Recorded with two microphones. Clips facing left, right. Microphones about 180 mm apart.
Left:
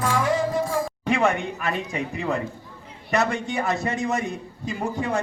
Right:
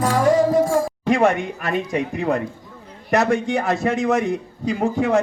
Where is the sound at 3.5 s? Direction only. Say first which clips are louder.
Right 5 dB; 70° right (ahead or behind).